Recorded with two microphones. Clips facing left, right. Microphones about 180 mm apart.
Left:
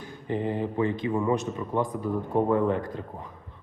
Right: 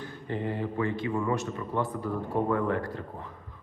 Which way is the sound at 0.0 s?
15° left (ahead or behind).